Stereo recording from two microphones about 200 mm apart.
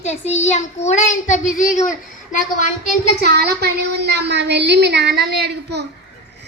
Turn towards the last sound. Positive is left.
turn(degrees=-55)  # may be behind; listen again after turning